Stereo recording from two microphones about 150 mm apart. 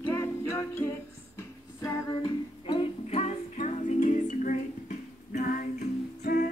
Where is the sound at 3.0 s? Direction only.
45° left (ahead or behind).